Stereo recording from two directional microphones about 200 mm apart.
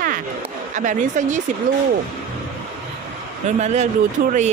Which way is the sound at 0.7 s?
40° right (ahead or behind).